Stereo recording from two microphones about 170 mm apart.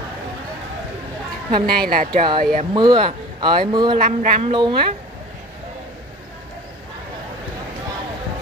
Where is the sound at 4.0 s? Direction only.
45° right (ahead or behind).